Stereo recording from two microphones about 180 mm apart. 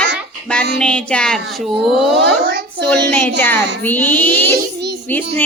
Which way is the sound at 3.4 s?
10° left (ahead or behind).